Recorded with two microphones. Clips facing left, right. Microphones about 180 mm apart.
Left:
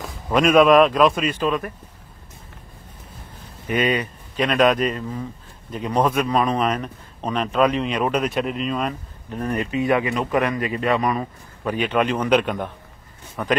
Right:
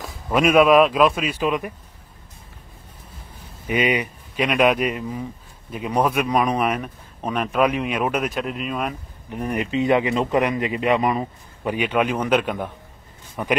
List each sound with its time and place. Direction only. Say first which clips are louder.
0.0 s speech: even; 5° right (ahead or behind)
3.6 s speech: even; 15° right (ahead or behind)
13.4 s speech: left 1 dB; 15° right (ahead or behind)